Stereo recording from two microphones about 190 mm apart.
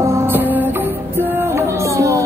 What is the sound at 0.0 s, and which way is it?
Music, 15° right (ahead or behind).